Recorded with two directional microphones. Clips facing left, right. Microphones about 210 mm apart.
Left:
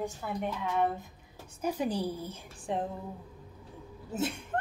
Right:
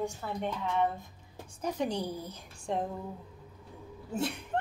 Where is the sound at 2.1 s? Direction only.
30° left (ahead or behind).